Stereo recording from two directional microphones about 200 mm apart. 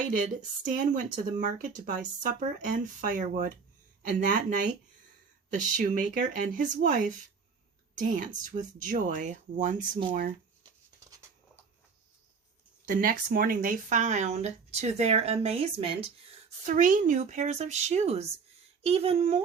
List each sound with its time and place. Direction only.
0.7 s speech: 40° right (ahead or behind)
5.7 s speech: 40° right (ahead or behind)
12.8 s speech: 45° right (ahead or behind); by 16.0 s 30° right (ahead or behind)
16.6 s speech: 40° right (ahead or behind)